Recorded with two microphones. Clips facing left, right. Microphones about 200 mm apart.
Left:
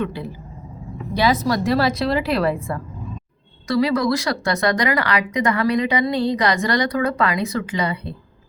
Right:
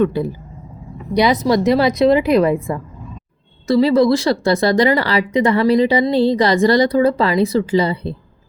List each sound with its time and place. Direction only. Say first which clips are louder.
1.1 s speech: right 5 dB; 15° right (ahead or behind)
3.7 s speech: right 6 dB; 30° right (ahead or behind)